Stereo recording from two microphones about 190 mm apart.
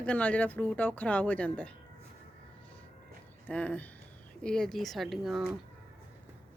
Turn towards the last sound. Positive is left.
turn(degrees=0)  # may be behind; listen again after turning